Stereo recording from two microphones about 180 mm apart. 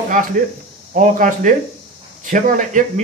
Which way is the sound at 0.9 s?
45° right (ahead or behind).